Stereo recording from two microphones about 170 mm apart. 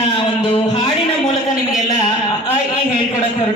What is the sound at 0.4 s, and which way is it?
Music, 30° left (ahead or behind).